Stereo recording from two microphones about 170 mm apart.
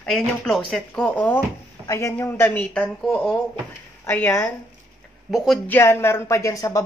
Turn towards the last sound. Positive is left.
turn(degrees=20)  # may be behind; listen again after turning